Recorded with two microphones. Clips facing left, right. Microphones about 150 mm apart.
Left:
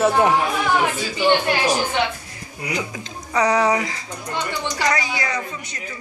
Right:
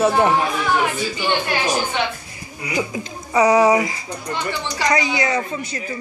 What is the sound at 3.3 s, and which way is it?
Speech, 10° right (ahead or behind).